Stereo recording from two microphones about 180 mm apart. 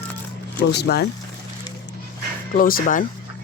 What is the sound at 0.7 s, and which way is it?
Speech, 65° left (ahead or behind).